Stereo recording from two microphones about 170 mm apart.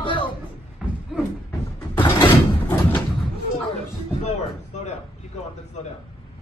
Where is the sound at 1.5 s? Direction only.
15° left (ahead or behind).